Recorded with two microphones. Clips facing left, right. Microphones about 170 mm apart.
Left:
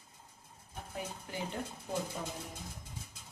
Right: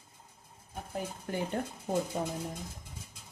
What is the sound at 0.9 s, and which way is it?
Speech, 50° right (ahead or behind).